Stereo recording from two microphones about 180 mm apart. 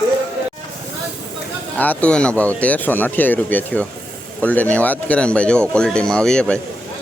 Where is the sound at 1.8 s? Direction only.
10° left (ahead or behind).